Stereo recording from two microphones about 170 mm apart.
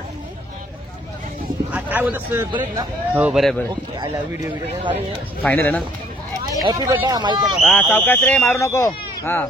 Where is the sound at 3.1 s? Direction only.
5° right (ahead or behind).